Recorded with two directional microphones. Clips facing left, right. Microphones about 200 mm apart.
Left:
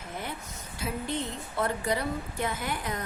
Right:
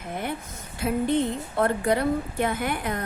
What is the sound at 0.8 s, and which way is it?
A woman's voice, 55° right (ahead or behind).